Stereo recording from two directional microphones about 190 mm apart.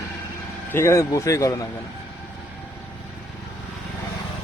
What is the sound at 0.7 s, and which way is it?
Speech, 15° left (ahead or behind).